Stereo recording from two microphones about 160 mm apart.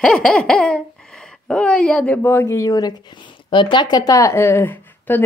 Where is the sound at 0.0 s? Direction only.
5° left (ahead or behind).